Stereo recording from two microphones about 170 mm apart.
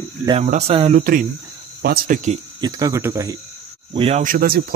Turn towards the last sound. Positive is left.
turn(degrees=-60)  # may be behind; listen again after turning